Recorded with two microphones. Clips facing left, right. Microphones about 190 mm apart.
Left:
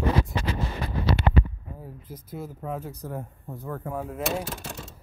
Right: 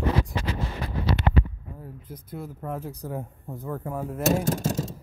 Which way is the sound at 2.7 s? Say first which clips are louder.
Right 2 dB; 10° right (ahead or behind).